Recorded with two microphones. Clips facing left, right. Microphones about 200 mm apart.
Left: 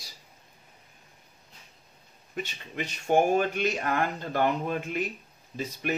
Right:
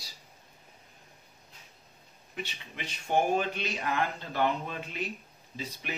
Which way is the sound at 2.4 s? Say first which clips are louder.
Left 4 dB; 45° left (ahead or behind).